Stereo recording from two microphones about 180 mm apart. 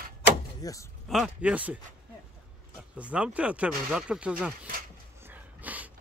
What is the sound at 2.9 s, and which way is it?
Speech, 5° right (ahead or behind).